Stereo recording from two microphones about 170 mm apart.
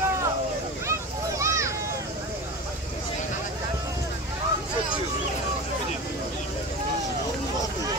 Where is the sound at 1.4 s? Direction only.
15° right (ahead or behind).